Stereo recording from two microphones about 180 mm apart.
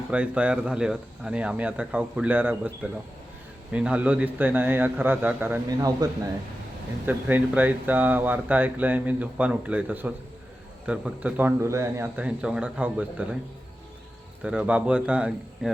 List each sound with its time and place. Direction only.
0.1 s speech: 5° right (ahead or behind)
14.4 s speech: 5° right (ahead or behind)